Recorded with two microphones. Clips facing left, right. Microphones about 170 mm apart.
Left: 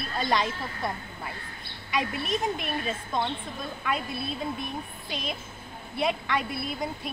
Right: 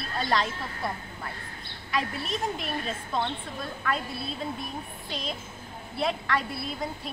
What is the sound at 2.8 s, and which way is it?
Speech, 10° left (ahead or behind).